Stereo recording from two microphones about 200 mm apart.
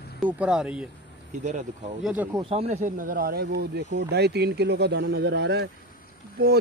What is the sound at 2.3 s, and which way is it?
Speech, 30° right (ahead or behind).